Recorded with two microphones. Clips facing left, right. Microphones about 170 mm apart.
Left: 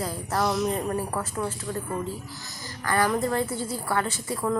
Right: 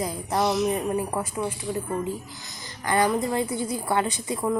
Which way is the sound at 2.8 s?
20° right (ahead or behind).